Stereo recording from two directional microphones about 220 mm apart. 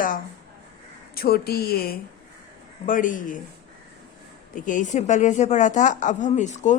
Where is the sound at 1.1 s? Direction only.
45° left (ahead or behind).